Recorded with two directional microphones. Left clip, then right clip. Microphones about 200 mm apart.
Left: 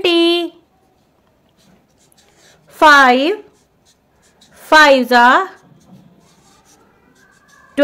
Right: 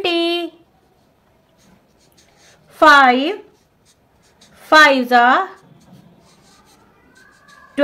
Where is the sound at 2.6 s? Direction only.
40° left (ahead or behind).